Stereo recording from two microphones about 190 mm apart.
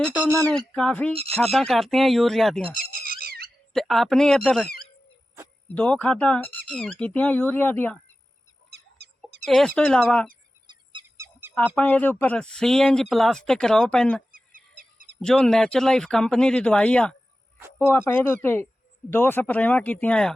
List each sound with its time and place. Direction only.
0.0 s speech: 5° right (ahead or behind)
3.1 s squeak: 50° right (ahead or behind)
3.7 s speech: centre (ahead or behind)
5.7 s speech: 5° left (ahead or behind)
8.7 s chicken: 60° right (ahead or behind)
9.5 s speech: centre (ahead or behind)
10.7 s bird: 25° right (ahead or behind)
11.8 s speech: 10° left (ahead or behind)
14.3 s goose: 45° right (ahead or behind)
15.2 s speech: 5° left (ahead or behind)